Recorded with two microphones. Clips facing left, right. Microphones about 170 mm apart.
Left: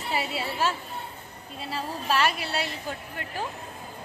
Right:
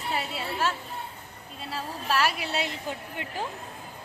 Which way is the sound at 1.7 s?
Centre (ahead or behind).